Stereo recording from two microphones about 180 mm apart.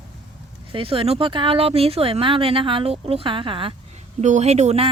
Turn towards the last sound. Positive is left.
turn(degrees=-35)  # may be behind; listen again after turning